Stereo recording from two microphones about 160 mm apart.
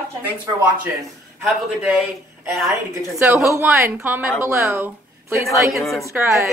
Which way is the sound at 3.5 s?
15° right (ahead or behind).